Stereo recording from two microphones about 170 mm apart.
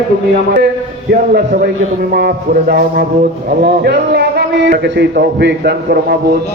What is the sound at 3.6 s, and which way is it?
A man's voice, 75° right (ahead or behind).